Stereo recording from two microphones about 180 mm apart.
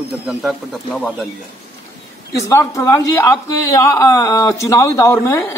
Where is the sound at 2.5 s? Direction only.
15° left (ahead or behind).